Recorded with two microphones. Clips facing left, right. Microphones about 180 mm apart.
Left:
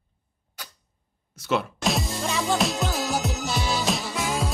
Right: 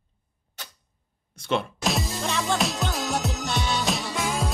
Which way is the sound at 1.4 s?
5° left (ahead or behind).